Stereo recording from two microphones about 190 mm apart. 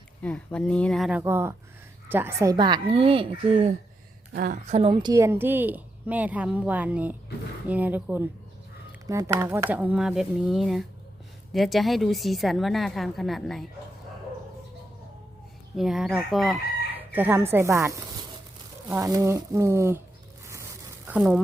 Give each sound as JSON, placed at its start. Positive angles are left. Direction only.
{"t": 0.2, "sound": "a woman's voice", "side_deg": 5}
{"t": 1.2, "sound": "a woman's voice", "side_deg": -15}
{"t": 4.3, "sound": "a woman's voice", "side_deg": -50}
{"t": 4.6, "sound": "a woman's voice", "side_deg": -35}
{"t": 5.1, "sound": "a woman's voice", "side_deg": -15}
{"t": 15.7, "sound": "a woman's voice", "side_deg": 0}
{"t": 17.1, "sound": "a woman's voice", "side_deg": -10}
{"t": 21.1, "sound": "speech", "side_deg": -5}